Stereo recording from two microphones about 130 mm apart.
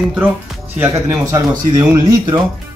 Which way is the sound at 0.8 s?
25° right (ahead or behind).